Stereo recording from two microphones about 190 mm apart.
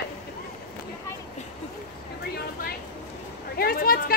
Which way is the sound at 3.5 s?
50° left (ahead or behind).